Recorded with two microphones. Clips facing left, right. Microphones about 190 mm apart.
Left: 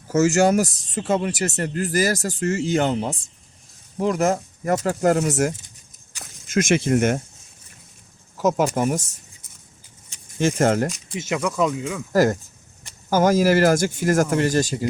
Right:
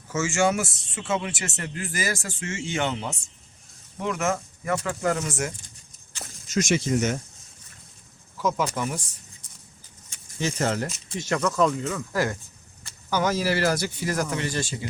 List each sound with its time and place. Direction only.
0.1 s speech: 40° left (ahead or behind)
6.5 s speech: 55° left (ahead or behind)
8.4 s speech: 45° left (ahead or behind)
10.3 s speech: 50° left (ahead or behind)
11.3 s speech: 10° left (ahead or behind)
12.1 s speech: 40° left (ahead or behind)